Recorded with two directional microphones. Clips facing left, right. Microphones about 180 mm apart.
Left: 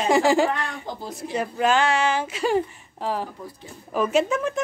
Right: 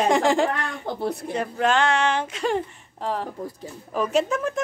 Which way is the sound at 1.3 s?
5° left (ahead or behind).